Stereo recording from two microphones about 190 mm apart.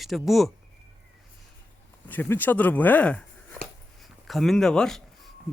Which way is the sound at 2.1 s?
10° left (ahead or behind).